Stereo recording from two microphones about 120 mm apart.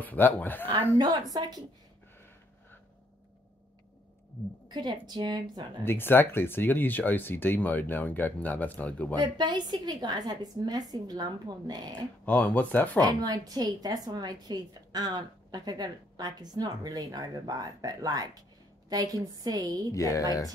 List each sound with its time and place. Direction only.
0.0 s speech: 15° left (ahead or behind)
0.9 s a woman's voice: 35° right (ahead or behind)
4.6 s a woman's voice: 35° right (ahead or behind)
5.9 s speech: 20° left (ahead or behind)
9.2 s a woman's voice: 40° right (ahead or behind)
12.3 s speech: 15° left (ahead or behind)
13.0 s a woman's voice: 35° right (ahead or behind)
19.9 s speech: 25° left (ahead or behind)